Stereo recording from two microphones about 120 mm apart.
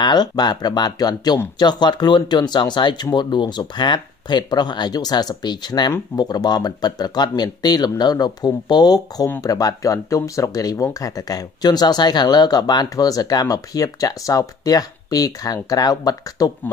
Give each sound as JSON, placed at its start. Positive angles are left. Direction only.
{"t": 0.0, "sound": "speech", "side_deg": 35}